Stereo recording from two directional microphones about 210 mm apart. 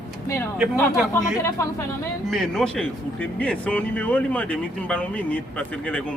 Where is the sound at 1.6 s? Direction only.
15° left (ahead or behind).